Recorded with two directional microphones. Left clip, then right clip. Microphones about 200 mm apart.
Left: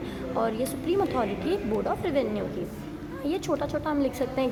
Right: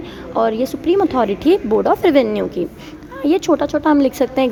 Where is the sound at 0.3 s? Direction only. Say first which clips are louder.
Right 11 dB; 40° right (ahead or behind).